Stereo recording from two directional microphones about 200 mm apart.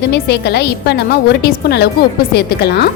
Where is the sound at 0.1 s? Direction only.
55° left (ahead or behind).